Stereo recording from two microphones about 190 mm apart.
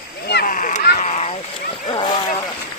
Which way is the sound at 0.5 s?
45° left (ahead or behind).